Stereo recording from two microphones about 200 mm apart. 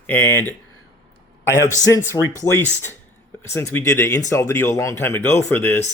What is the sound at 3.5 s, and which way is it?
Speech, 10° left (ahead or behind).